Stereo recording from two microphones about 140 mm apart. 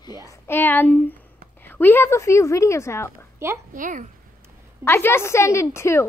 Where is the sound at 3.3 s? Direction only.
20° right (ahead or behind).